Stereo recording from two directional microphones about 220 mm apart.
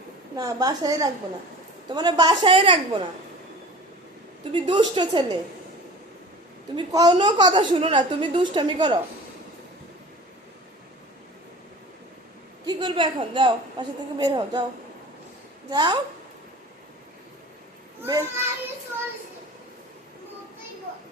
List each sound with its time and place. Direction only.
0.3 s a woman's voice: 15° right (ahead or behind)
4.5 s a woman's voice: 20° right (ahead or behind)
6.7 s a woman's voice: 20° right (ahead or behind)
12.6 s a woman's voice: 20° right (ahead or behind)
15.7 s a woman's voice: 20° right (ahead or behind)
18.0 s a woman's voice: 10° right (ahead or behind)